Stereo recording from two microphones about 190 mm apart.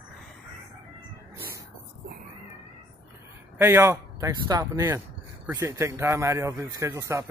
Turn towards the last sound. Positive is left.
turn(degrees=-15)  # may be behind; listen again after turning